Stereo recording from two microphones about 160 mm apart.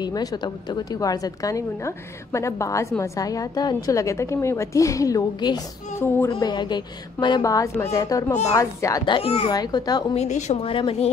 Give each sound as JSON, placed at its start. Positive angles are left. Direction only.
{"t": 0.0, "sound": "a woman's voice", "side_deg": 25}
{"t": 5.9, "sound": "speech", "side_deg": 15}
{"t": 6.3, "sound": "a woman's voice", "side_deg": 30}
{"t": 9.5, "sound": "a woman's voice", "side_deg": 25}
{"t": 10.1, "sound": "speech", "side_deg": 45}